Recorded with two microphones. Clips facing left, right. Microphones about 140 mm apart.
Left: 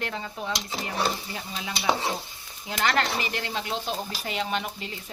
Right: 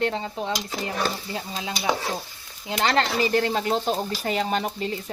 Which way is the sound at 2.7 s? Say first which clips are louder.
Right 3 dB; 30° right (ahead or behind).